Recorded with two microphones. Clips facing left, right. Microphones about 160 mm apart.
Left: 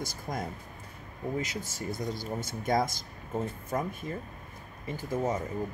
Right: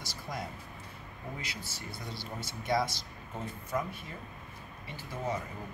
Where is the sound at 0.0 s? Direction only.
50° left (ahead or behind).